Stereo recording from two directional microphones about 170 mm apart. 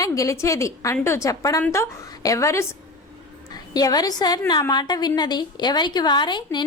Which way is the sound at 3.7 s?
20° left (ahead or behind).